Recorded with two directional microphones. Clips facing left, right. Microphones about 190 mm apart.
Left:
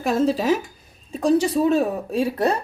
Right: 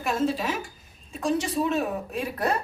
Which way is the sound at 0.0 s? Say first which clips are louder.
Left 6 dB; 35° left (ahead or behind).